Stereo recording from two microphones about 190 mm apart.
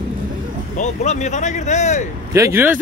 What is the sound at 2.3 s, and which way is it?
Speech, 15° right (ahead or behind).